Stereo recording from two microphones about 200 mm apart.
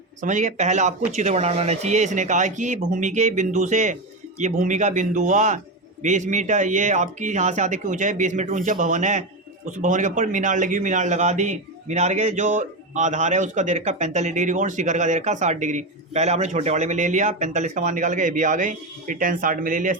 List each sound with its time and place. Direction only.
0.2 s a man's voice: 40° right (ahead or behind)